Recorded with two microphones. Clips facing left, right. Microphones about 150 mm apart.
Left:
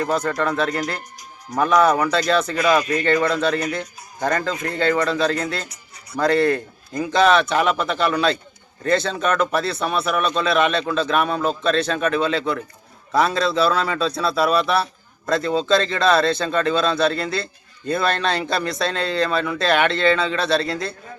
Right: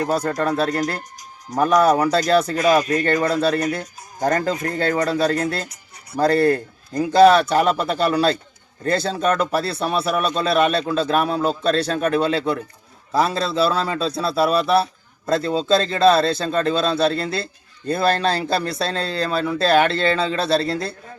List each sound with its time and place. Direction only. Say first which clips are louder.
0.0 s a man's voice: right 1 dB; 40° right (ahead or behind); by 6.1 s 55° right (ahead or behind)
6.1 s a man's voice: right 1 dB; 35° right (ahead or behind)